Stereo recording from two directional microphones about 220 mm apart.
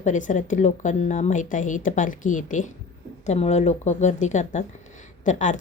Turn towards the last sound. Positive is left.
turn(degrees=35)  # may be behind; listen again after turning